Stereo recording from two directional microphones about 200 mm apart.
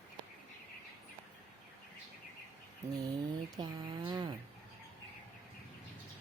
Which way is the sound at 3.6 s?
20° right (ahead or behind).